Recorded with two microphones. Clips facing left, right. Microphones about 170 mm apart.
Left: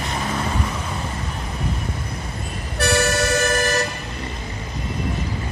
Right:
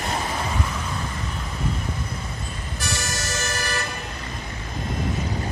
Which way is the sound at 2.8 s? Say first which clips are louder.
Left 12 dB; 60° left (ahead or behind).